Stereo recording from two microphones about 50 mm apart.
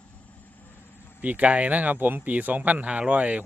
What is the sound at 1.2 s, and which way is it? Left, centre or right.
Speech, right.